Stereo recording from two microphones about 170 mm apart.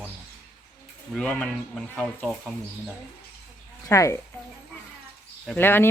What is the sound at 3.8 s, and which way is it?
Speech, 20° left (ahead or behind).